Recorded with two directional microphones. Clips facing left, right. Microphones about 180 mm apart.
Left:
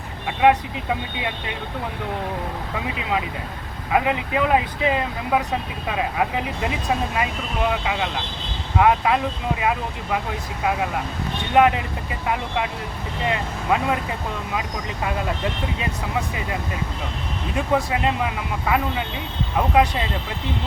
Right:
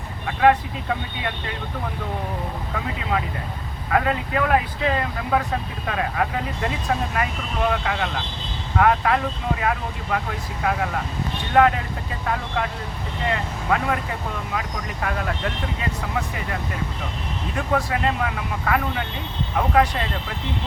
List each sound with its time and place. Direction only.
0.3 s speech: 15° left (ahead or behind)
2.8 s speech: 15° left (ahead or behind)
13.2 s speech: 20° left (ahead or behind)
15.0 s speech: 20° left (ahead or behind)